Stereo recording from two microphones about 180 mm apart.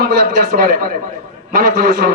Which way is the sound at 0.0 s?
55° right (ahead or behind).